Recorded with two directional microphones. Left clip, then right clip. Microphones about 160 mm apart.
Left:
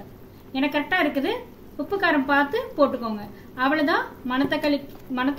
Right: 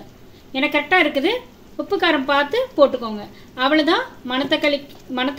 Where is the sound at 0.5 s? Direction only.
50° right (ahead or behind).